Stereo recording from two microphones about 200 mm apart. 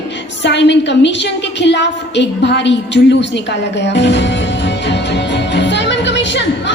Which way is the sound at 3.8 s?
60° left (ahead or behind).